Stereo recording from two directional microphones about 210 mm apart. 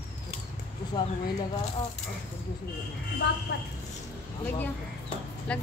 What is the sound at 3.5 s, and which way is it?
Speech, 50° left (ahead or behind).